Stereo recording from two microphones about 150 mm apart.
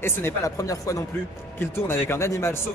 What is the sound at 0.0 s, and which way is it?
A man's voice, 15° left (ahead or behind).